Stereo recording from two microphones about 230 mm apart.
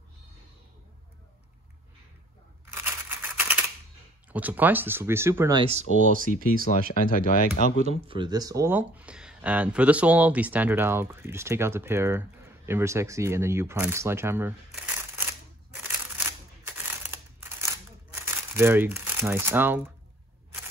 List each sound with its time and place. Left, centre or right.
2.6 s a sound: centre
4.3 s speech: centre
5.6 s speech: right
6.3 s speech: left
7.9 s speech: right
15.7 s a sound: centre
18.1 s speech: centre